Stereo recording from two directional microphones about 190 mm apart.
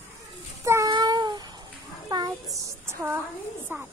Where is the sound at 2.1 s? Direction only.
20° right (ahead or behind).